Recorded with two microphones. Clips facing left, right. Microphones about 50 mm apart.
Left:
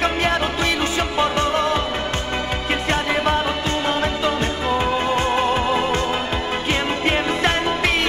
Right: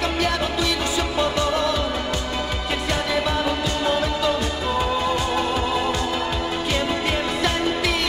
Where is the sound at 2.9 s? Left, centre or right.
Left.